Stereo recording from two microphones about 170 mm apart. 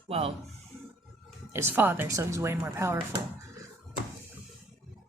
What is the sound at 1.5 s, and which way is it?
A woman's voice, 15° right (ahead or behind).